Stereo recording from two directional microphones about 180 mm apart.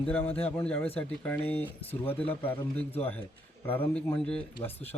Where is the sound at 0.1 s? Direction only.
10° left (ahead or behind).